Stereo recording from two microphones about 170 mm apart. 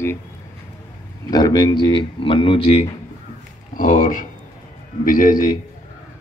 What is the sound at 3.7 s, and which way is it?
A man's voice, 50° left (ahead or behind).